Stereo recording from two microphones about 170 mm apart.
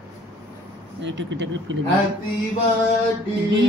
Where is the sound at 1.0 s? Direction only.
90° right.